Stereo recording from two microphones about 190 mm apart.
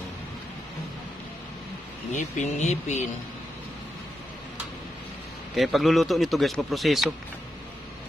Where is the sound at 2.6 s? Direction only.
35° left (ahead or behind).